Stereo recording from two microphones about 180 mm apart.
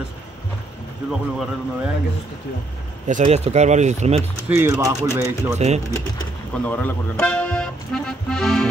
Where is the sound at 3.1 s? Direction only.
40° right (ahead or behind).